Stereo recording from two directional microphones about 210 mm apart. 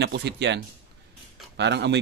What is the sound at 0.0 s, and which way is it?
Speech, 55° right (ahead or behind).